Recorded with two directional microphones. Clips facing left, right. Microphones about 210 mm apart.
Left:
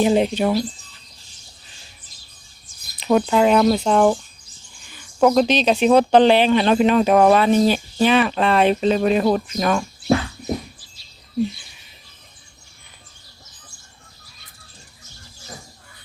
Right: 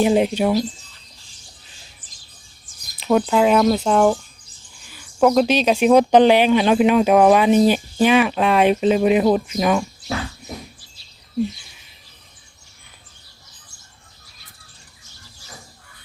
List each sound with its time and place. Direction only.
0.0 s speech: 5° right (ahead or behind)
2.0 s bird: 90° right
3.0 s speech: centre (ahead or behind)